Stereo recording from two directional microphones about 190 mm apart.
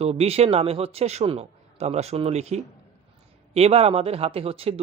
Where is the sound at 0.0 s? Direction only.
35° right (ahead or behind).